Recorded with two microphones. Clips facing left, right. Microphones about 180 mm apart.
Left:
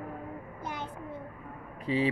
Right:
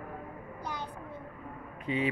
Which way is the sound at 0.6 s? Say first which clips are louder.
Left 1 dB; 20° left (ahead or behind).